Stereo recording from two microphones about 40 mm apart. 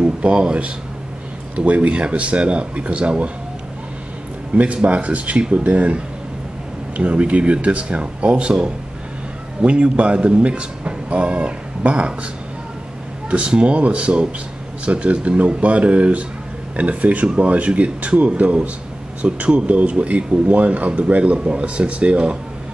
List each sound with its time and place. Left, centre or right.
0.0 s speech: right
4.5 s speech: right
13.3 s speech: right